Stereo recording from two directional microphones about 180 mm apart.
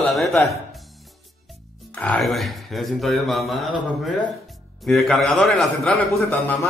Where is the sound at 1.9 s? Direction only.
5° left (ahead or behind).